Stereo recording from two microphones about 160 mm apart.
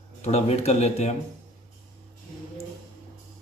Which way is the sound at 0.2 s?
40° left (ahead or behind).